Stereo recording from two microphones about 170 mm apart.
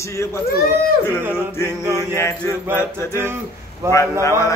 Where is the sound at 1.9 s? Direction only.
15° left (ahead or behind).